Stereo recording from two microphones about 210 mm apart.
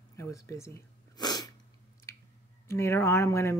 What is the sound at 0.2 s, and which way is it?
Sneeze, 15° left (ahead or behind).